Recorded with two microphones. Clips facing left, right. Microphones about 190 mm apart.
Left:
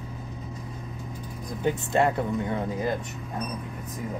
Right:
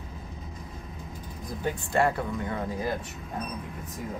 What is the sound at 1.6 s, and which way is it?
Speech, 20° left (ahead or behind).